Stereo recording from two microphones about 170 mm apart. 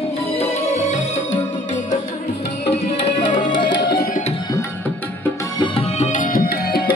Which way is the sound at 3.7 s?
80° left.